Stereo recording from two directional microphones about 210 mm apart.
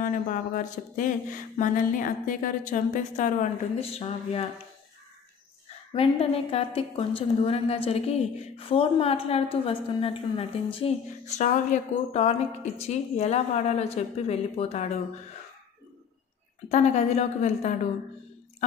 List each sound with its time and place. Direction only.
0.0 s a woman's voice: 40° left (ahead or behind)
5.9 s a woman's voice: 25° left (ahead or behind)
16.6 s a woman's voice: 30° left (ahead or behind)